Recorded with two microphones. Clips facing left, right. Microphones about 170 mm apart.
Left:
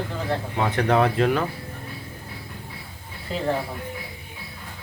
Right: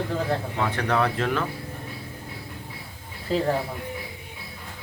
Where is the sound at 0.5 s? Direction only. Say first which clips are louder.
Left 7 dB; 25° left (ahead or behind).